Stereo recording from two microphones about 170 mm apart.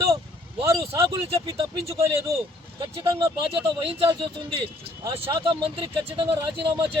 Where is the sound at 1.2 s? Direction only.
20° right (ahead or behind).